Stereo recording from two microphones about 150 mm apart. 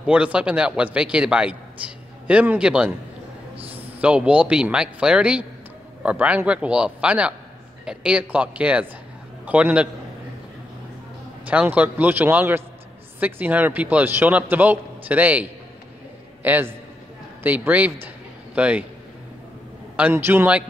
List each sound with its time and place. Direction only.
0.0 s a man's voice: 10° right (ahead or behind)
3.5 s a sound: 40° right (ahead or behind)
4.0 s a man's voice: 10° right (ahead or behind)
11.4 s a man's voice: 10° right (ahead or behind)
16.4 s a man's voice: 10° right (ahead or behind)
18.0 s a sound: 10° right (ahead or behind)
20.0 s a man's voice: 15° right (ahead or behind)